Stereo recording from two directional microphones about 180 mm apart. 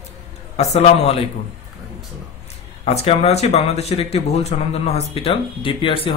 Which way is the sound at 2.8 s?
35° left (ahead or behind).